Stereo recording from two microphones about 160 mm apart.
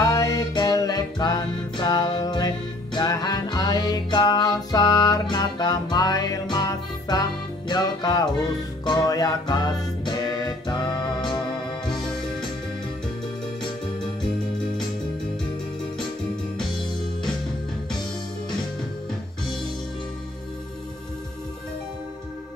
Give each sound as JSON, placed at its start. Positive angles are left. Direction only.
{"t": 0.0, "sound": "music", "side_deg": 25}
{"t": 11.8, "sound": "music", "side_deg": 5}